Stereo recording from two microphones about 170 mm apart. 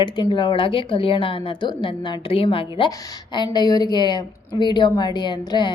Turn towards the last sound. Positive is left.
turn(degrees=25)  # may be behind; listen again after turning